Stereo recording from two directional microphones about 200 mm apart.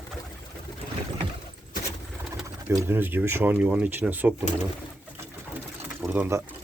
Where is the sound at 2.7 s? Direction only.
10° right (ahead or behind).